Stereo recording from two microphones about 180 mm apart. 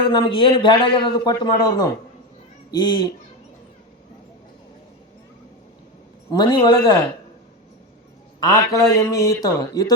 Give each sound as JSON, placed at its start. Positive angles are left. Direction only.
{"t": 0.1, "sound": "a man's voice", "side_deg": 30}
{"t": 6.3, "sound": "a man's voice", "side_deg": 25}
{"t": 8.4, "sound": "a man's voice", "side_deg": 20}